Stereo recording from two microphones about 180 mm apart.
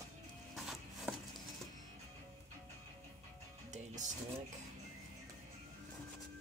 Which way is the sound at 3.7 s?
40° right (ahead or behind).